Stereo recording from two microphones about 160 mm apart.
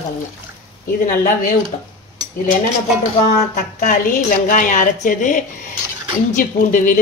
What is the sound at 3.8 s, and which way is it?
Speech, 55° left (ahead or behind).